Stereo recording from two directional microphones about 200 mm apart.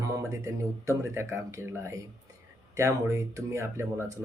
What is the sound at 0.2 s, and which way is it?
Speech, 15° right (ahead or behind).